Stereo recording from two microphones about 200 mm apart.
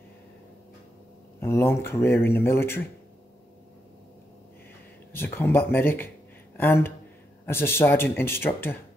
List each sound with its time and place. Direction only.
1.4 s speech: 10° left (ahead or behind)
5.1 s speech: 10° left (ahead or behind)